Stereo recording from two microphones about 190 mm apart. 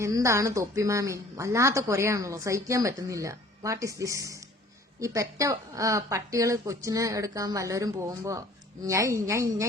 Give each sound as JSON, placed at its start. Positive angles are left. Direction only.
{"t": 0.0, "sound": "a woman's voice", "side_deg": -15}